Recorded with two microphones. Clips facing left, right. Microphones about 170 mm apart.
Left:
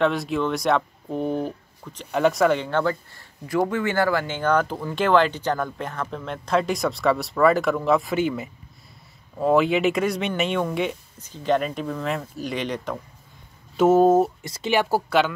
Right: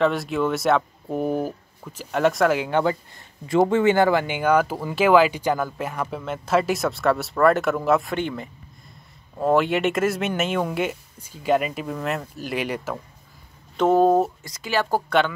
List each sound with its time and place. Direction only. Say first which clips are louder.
0.0 s speech: right 1 dB; centre (ahead or behind)
2.8 s speech: right 1 dB; 20° right (ahead or behind)
13.7 s speech: left 1 dB; 5° left (ahead or behind)
14.4 s speech: left 2 dB; 25° left (ahead or behind)
14.9 s speech: even; 5° left (ahead or behind)